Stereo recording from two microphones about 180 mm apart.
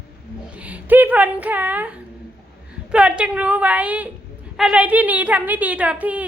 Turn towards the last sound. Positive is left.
turn(degrees=-10)  # may be behind; listen again after turning